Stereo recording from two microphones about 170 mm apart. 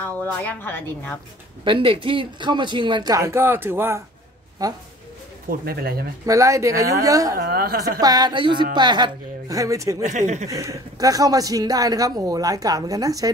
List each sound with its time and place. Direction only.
0.0 s a woman's voice: 10° left (ahead or behind)
1.6 s speech: 30° right (ahead or behind)
5.5 s speech: 65° right (ahead or behind)
6.2 s speech: 20° right (ahead or behind)
7.3 s speech: 65° right (ahead or behind)
8.0 s speech: 25° right (ahead or behind)
10.0 s speech: 45° right (ahead or behind)
10.5 s speech: 20° right (ahead or behind)